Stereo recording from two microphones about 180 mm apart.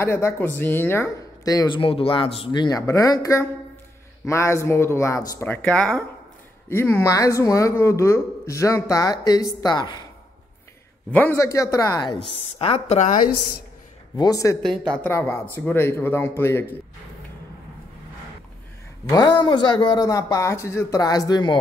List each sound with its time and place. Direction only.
0.0 s speech: 15° left (ahead or behind)
11.1 s speech: 10° left (ahead or behind)
12.5 s a woman's voice: 35° left (ahead or behind)
14.1 s speech: 20° left (ahead or behind)
19.0 s speech: 20° left (ahead or behind)